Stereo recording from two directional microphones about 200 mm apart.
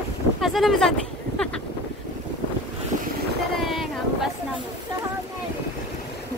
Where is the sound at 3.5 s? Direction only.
Centre (ahead or behind).